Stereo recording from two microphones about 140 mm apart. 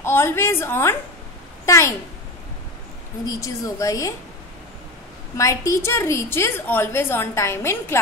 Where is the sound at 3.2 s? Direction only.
25° left (ahead or behind).